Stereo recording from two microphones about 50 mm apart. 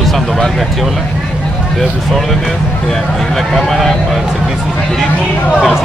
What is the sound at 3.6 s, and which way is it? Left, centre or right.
Speech, centre.